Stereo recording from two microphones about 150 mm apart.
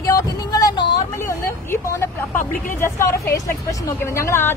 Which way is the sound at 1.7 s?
15° left (ahead or behind).